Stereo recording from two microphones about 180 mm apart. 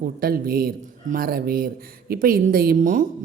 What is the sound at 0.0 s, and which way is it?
Speech, 55° right (ahead or behind).